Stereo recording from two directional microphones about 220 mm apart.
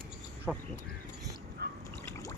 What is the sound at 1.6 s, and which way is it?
Trickle, 50° right (ahead or behind).